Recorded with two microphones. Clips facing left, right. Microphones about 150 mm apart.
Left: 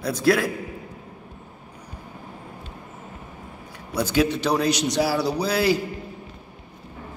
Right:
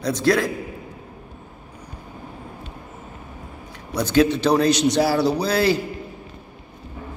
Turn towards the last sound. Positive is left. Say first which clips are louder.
# right 2 dB
turn(degrees=10)  # may be behind; listen again after turning